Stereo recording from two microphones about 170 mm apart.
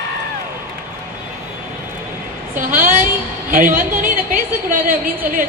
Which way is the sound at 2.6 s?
55° right (ahead or behind).